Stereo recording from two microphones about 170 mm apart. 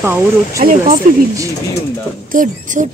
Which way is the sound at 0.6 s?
55° right (ahead or behind).